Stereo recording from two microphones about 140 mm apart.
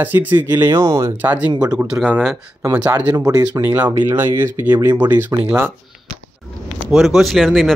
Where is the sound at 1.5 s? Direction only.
25° right (ahead or behind).